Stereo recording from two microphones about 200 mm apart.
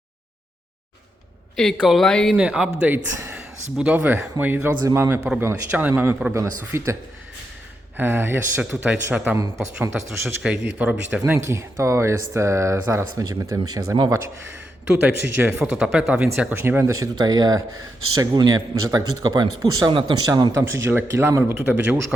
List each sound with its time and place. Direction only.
1.5 s speech: centre (ahead or behind); by 6.9 s 15° right (ahead or behind)
7.9 s a man's voice: 10° right (ahead or behind)